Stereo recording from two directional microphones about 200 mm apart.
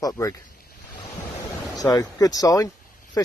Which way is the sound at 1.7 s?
20° left (ahead or behind).